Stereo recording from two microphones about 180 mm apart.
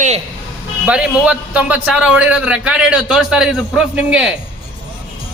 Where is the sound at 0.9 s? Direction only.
5° right (ahead or behind).